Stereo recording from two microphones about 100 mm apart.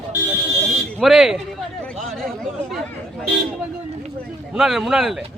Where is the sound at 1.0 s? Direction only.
5° right (ahead or behind).